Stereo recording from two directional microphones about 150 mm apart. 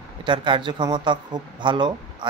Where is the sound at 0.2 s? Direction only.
30° right (ahead or behind).